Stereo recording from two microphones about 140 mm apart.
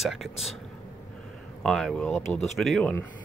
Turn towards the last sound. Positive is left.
turn(degrees=10)  # may be behind; listen again after turning